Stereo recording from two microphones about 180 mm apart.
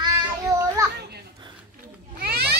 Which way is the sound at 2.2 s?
60° right (ahead or behind).